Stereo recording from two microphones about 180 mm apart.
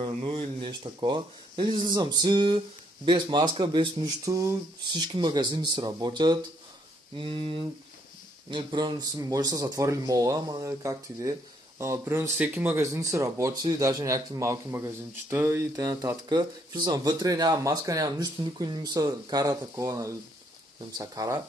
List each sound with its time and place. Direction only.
0.0 s speech: 35° right (ahead or behind)